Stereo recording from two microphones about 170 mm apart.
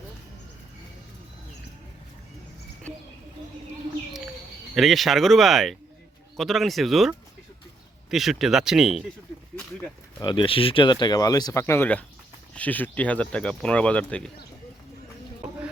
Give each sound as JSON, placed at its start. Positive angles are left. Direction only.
{"t": 4.7, "sound": "speech", "side_deg": 0}
{"t": 10.2, "sound": "speech", "side_deg": 30}